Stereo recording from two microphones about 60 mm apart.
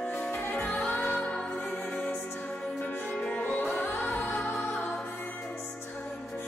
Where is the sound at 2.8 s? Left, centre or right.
Centre.